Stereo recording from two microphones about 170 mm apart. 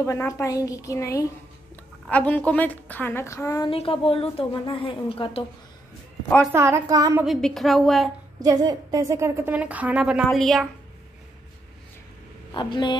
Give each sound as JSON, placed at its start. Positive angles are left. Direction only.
{"t": 0.0, "sound": "a woman's voice", "side_deg": 15}
{"t": 3.7, "sound": "speech", "side_deg": 30}
{"t": 6.5, "sound": "a woman's voice", "side_deg": -15}
{"t": 7.2, "sound": "a woman's voice", "side_deg": 0}
{"t": 8.4, "sound": "a woman's voice", "side_deg": -20}
{"t": 12.5, "sound": "a woman's voice", "side_deg": 30}